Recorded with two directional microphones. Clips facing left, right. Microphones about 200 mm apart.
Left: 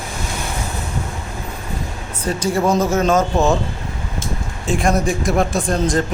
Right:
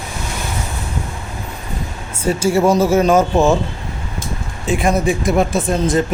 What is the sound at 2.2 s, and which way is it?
Speech, 25° right (ahead or behind).